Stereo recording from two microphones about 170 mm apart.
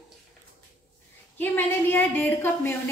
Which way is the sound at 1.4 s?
10° left (ahead or behind).